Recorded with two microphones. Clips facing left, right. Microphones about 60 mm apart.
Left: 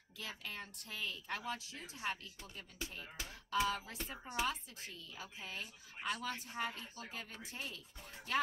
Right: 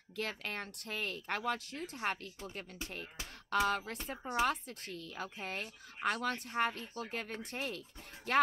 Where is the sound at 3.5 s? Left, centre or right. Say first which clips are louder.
Right 4 dB; right.